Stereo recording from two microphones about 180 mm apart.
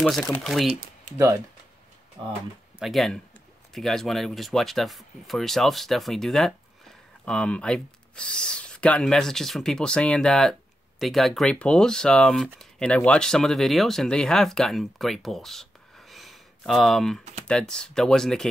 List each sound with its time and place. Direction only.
0.0 s speech: centre (ahead or behind)
1.1 s speech: 15° right (ahead or behind)
2.8 s speech: centre (ahead or behind)
16.1 s a sound: centre (ahead or behind)
17.5 s speech: 5° left (ahead or behind)